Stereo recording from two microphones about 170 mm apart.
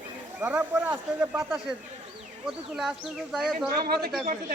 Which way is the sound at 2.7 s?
Centre (ahead or behind).